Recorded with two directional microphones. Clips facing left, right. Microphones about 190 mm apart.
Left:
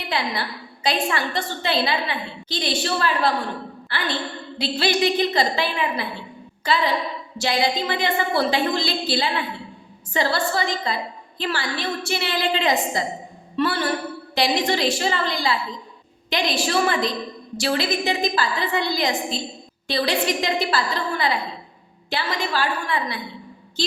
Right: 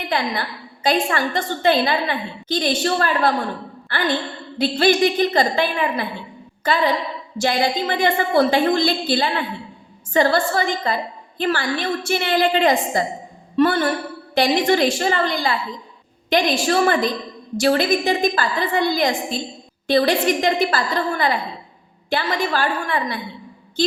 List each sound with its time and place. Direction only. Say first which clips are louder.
0.1 s a woman's voice: right 2 dB; 50° right (ahead or behind)